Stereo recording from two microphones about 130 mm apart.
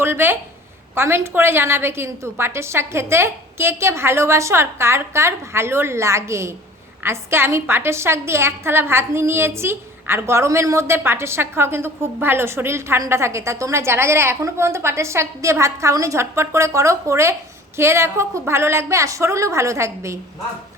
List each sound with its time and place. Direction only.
0.0 s a woman's voice: 15° right (ahead or behind)